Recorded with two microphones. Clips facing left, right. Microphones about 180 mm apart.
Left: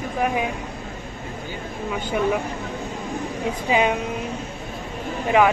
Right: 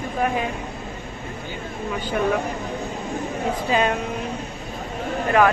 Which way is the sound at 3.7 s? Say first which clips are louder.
Left 1 dB; 10° left (ahead or behind).